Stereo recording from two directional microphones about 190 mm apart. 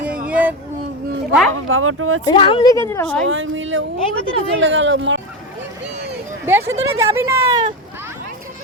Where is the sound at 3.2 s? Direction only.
90° right.